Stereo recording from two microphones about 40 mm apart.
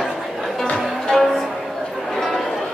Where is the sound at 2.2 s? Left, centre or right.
Centre.